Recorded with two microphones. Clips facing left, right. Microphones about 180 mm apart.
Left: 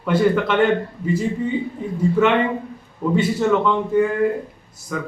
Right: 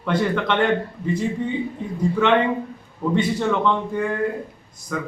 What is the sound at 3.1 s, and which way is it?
Speech, 5° left (ahead or behind).